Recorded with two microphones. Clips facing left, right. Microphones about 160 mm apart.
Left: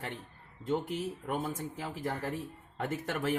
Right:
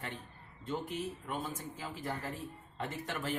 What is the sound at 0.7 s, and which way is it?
Speech, 70° left (ahead or behind).